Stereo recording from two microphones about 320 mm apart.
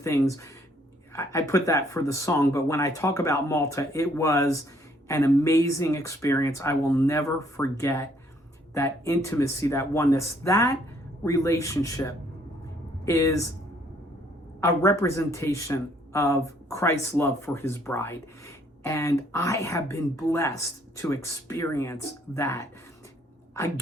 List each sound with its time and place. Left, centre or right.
0.0 s speech: centre
14.6 s speech: centre